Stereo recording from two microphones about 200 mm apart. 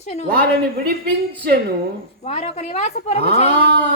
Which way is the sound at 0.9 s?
50° right (ahead or behind).